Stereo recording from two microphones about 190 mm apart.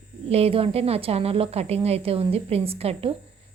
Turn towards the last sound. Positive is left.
turn(degrees=-30)  # may be behind; listen again after turning